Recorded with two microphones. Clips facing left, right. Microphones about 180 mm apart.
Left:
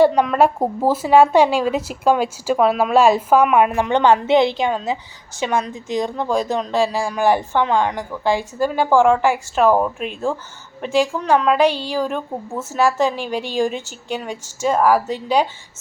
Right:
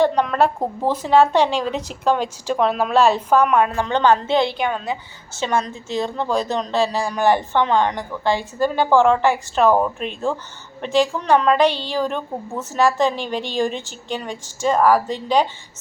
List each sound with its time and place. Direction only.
0.0 s a woman's voice: 5° left (ahead or behind); by 5.4 s 25° left (ahead or behind)
5.4 s a woman's voice: 10° left (ahead or behind)